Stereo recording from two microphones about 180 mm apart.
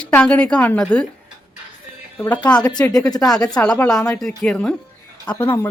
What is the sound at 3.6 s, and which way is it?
A woman's voice, 5° left (ahead or behind).